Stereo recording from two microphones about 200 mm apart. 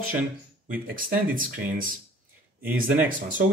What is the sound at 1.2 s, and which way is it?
Speech, 45° right (ahead or behind).